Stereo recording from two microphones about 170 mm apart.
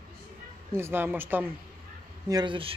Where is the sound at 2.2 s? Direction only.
25° right (ahead or behind).